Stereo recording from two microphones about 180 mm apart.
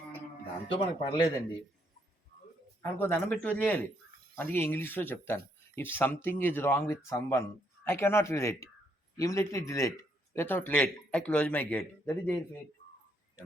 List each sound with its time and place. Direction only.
0.8 s speech: 30° left (ahead or behind)
2.8 s a man's voice: 10° left (ahead or behind)